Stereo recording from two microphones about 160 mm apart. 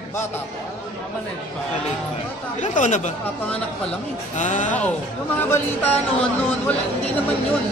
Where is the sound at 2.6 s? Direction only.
50° left (ahead or behind).